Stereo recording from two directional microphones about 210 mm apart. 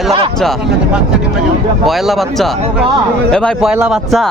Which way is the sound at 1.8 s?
Centre (ahead or behind).